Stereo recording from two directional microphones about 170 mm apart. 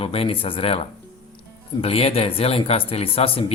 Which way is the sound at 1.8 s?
35° left (ahead or behind).